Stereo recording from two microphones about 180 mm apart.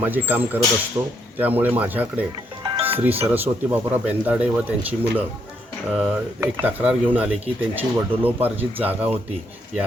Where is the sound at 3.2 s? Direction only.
10° right (ahead or behind).